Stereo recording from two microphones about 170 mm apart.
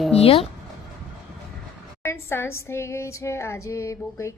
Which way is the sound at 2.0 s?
15° left (ahead or behind).